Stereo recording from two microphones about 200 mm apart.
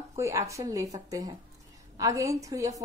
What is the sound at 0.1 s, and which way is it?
A woman's voice, 15° right (ahead or behind).